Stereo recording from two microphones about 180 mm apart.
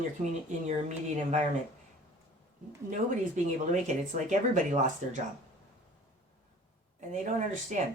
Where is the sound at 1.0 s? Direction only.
40° right (ahead or behind).